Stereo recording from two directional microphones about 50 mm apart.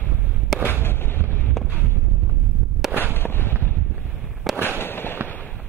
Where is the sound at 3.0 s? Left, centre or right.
Left.